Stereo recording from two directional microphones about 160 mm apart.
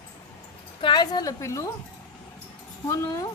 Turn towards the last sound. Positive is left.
turn(degrees=20)  # may be behind; listen again after turning